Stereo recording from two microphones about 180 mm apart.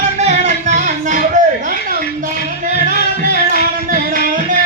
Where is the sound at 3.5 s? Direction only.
55° right (ahead or behind).